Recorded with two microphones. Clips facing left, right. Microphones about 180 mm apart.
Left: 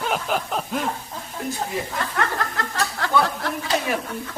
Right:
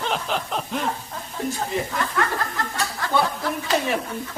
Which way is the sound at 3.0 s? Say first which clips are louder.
Left 1 dB; 70° left (ahead or behind).